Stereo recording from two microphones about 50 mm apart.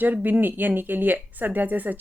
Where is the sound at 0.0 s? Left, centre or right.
Right.